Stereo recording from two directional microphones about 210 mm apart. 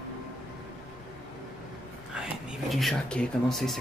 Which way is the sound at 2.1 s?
Centre (ahead or behind).